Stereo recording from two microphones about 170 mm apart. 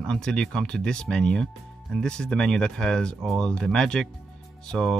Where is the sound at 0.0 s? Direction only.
5° left (ahead or behind).